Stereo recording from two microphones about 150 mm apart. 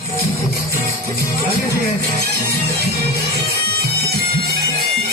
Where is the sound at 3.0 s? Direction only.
90° right.